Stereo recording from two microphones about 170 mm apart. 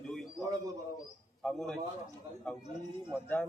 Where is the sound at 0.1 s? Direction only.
Centre (ahead or behind).